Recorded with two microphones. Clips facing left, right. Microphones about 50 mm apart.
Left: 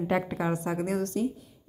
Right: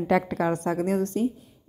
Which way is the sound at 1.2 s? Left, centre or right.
Right.